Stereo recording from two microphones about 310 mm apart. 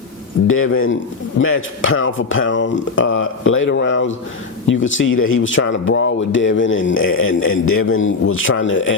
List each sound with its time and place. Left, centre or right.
0.4 s speech: left